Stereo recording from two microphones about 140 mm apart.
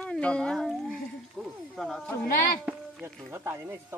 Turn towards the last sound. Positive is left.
turn(degrees=-15)  # may be behind; listen again after turning